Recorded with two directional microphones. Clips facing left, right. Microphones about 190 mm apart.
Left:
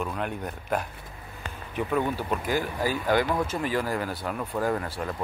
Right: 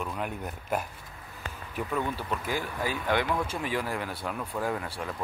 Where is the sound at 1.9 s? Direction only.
35° left (ahead or behind).